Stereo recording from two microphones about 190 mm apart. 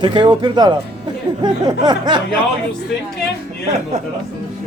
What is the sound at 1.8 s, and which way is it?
Speech, 20° right (ahead or behind).